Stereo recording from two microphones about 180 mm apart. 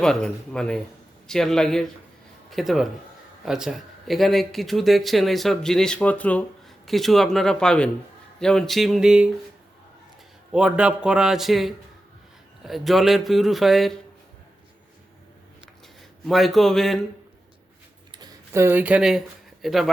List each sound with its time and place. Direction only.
0.0 s speech: 5° left (ahead or behind)
10.5 s speech: 5° right (ahead or behind)
16.2 s speech: centre (ahead or behind)
18.1 s speech: 20° right (ahead or behind); by 19.9 s centre (ahead or behind)